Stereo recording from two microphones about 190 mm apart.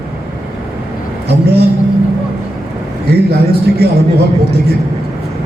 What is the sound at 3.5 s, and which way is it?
Music, 55° right (ahead or behind).